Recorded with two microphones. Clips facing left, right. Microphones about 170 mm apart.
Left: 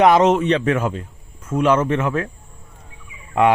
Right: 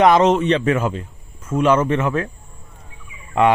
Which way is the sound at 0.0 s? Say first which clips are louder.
Even; 10° left (ahead or behind).